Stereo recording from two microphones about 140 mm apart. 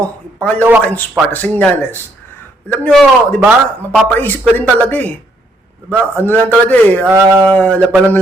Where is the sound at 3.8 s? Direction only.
15° left (ahead or behind).